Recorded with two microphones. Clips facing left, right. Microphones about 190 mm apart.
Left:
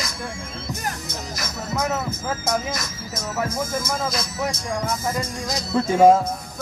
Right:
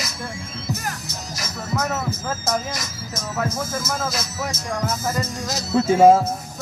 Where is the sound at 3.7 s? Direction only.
5° right (ahead or behind).